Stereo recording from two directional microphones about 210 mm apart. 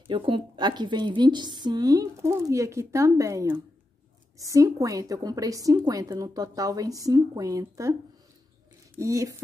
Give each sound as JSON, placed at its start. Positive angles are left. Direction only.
{"t": 0.0, "sound": "a woman's voice", "side_deg": -25}
{"t": 8.9, "sound": "a woman's voice", "side_deg": -15}